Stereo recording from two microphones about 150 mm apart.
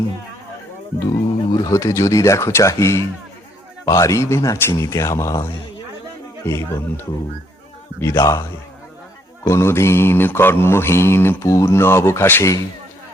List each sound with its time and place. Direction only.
1.5 s speech: 30° left (ahead or behind)
6.5 s mantra: 15° left (ahead or behind)
8.0 s speech: 20° left (ahead or behind)
9.4 s mantra: 20° left (ahead or behind)